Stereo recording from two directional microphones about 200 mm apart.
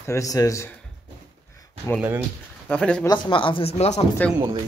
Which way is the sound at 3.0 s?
20° left (ahead or behind).